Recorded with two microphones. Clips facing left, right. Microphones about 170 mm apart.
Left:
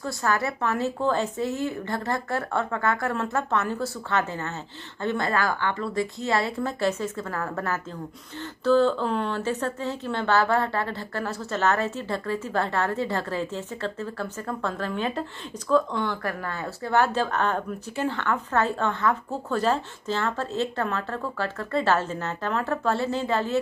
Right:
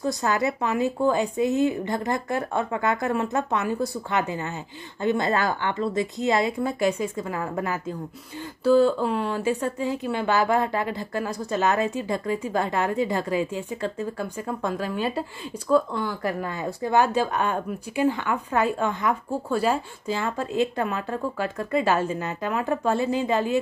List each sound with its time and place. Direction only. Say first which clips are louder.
0.0 s speech: right 3 dB; 20° right (ahead or behind)